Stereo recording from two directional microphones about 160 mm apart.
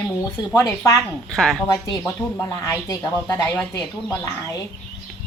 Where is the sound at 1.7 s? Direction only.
20° left (ahead or behind).